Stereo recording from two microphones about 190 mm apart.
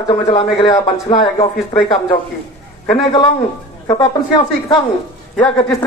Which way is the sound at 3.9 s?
20° left (ahead or behind).